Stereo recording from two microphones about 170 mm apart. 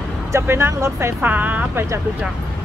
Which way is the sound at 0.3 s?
15° right (ahead or behind).